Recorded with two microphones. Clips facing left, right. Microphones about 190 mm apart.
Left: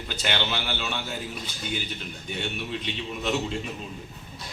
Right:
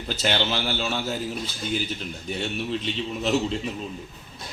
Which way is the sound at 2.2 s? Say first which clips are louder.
Right 4 dB; 35° right (ahead or behind).